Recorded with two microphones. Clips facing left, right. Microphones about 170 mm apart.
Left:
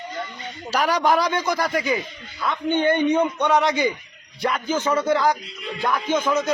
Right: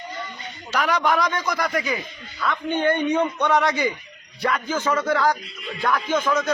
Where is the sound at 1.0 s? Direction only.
35° left (ahead or behind).